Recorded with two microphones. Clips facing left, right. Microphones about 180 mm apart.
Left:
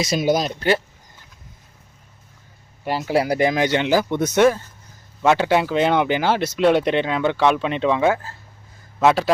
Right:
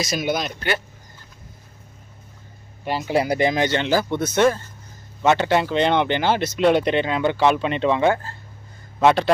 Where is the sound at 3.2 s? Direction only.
25° right (ahead or behind).